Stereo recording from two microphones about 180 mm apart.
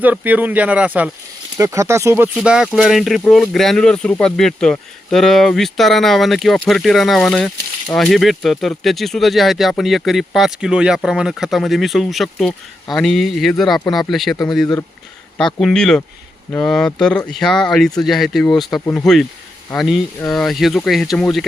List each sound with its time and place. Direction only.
0.0 s speech: 10° right (ahead or behind)
15.5 s speech: 5° left (ahead or behind)